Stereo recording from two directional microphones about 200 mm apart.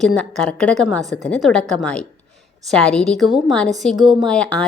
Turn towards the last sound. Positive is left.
turn(degrees=5)  # may be behind; listen again after turning